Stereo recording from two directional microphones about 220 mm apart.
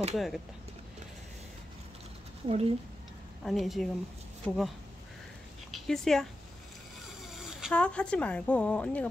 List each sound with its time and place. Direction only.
0.1 s a woman's voice: centre (ahead or behind)
2.4 s speech: 25° right (ahead or behind)
3.4 s a woman's voice: centre (ahead or behind)
7.2 s speech: centre (ahead or behind)